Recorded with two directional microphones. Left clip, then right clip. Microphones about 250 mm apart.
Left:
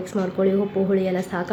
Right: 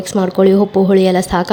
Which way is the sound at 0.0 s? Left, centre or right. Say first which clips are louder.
Right 10 dB; right.